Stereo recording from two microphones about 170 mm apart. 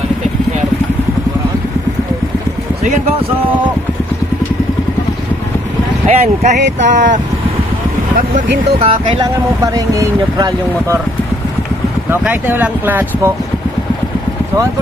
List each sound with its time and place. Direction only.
6.0 s speech: 45° right (ahead or behind)
8.7 s speech: 30° right (ahead or behind)
12.1 s speech: 10° right (ahead or behind)